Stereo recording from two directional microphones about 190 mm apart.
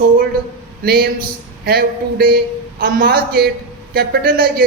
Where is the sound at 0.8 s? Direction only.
50° right (ahead or behind).